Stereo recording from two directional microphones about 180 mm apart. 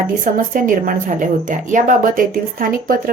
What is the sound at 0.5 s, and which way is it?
Speech, 50° right (ahead or behind).